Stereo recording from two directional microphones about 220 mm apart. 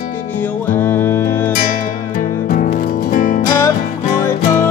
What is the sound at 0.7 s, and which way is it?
Music, 10° left (ahead or behind).